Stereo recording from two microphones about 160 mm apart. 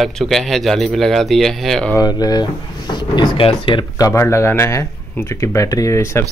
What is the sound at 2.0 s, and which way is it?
Speech, 25° left (ahead or behind).